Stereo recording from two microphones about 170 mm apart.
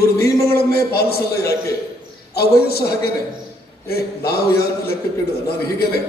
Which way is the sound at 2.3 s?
65° left (ahead or behind).